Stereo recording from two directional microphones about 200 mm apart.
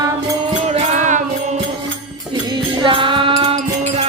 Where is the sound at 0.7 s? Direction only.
35° right (ahead or behind).